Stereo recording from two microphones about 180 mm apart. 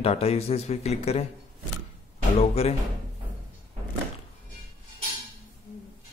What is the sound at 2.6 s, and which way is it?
Speech, 35° left (ahead or behind).